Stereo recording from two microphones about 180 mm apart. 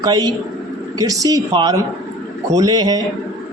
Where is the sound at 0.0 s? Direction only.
25° right (ahead or behind).